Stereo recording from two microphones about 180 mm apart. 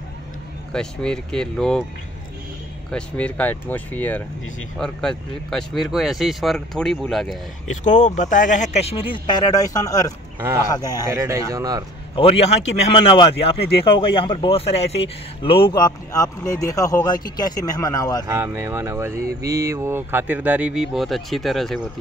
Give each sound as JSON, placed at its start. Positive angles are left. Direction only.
{"t": 0.7, "sound": "speech", "side_deg": 5}
{"t": 2.9, "sound": "speech", "side_deg": 5}
{"t": 7.7, "sound": "speech", "side_deg": 45}
{"t": 11.1, "sound": "speech", "side_deg": -15}
{"t": 12.2, "sound": "speech", "side_deg": 35}
{"t": 18.2, "sound": "speech", "side_deg": -15}